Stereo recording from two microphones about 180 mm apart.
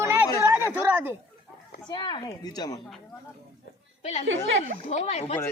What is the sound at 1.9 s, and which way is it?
Speech, 25° left (ahead or behind).